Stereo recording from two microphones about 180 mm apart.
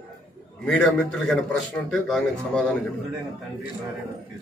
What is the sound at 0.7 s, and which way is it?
A man's voice, centre (ahead or behind).